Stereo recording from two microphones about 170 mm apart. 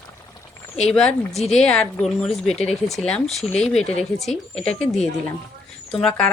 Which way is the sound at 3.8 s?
40° left (ahead or behind).